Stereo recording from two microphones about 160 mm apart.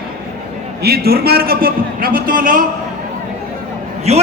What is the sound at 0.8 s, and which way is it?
A man's voice, 80° right.